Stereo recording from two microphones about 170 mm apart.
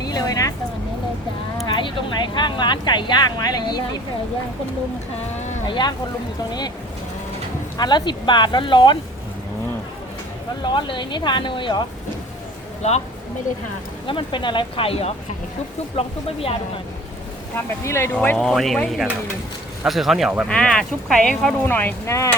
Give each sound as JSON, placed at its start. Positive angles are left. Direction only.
{"t": 0.0, "sound": "a sound", "side_deg": 20}
{"t": 1.6, "sound": "a sound", "side_deg": 25}
{"t": 2.3, "sound": "speech", "side_deg": 25}
{"t": 5.6, "sound": "speech", "side_deg": 25}
{"t": 7.8, "sound": "speech", "side_deg": 25}
{"t": 10.6, "sound": "speech", "side_deg": 30}
{"t": 12.8, "sound": "speech", "side_deg": 40}
{"t": 14.1, "sound": "speech", "side_deg": 30}
{"t": 17.5, "sound": "speech", "side_deg": 15}